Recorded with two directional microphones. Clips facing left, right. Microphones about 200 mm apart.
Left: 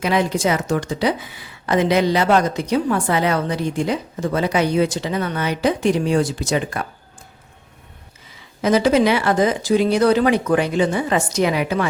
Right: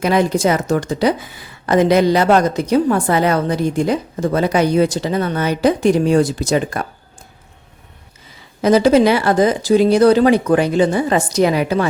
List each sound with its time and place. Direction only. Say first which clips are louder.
0.0 s a woman's voice: right 4 dB; 45° right (ahead or behind)
8.6 s speech: right 4 dB; 35° right (ahead or behind)